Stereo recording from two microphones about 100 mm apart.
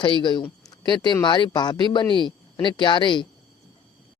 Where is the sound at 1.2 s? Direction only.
50° left (ahead or behind).